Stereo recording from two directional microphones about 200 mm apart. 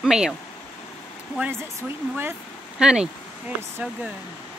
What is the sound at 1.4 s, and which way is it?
Speech, 10° right (ahead or behind).